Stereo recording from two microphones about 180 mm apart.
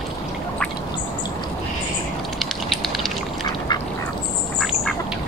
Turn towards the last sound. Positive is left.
turn(degrees=20)  # may be behind; listen again after turning